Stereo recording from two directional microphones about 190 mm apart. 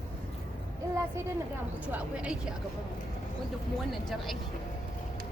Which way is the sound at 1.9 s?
5° right (ahead or behind).